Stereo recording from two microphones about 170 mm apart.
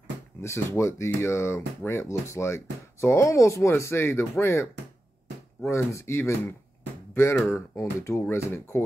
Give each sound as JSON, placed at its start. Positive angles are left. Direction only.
{"t": 0.4, "sound": "speech", "side_deg": 15}
{"t": 5.7, "sound": "speech", "side_deg": 15}